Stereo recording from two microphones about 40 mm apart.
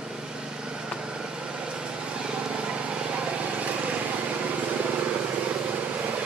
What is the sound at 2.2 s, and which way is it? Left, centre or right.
Vehicle, right.